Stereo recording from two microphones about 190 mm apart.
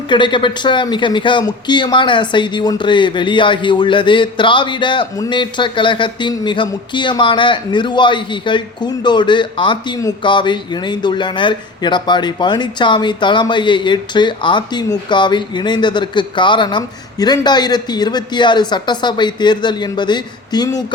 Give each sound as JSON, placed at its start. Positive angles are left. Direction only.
{"t": 0.1, "sound": "speech", "side_deg": 25}